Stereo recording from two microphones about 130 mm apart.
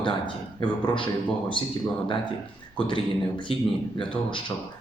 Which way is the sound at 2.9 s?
40° left (ahead or behind).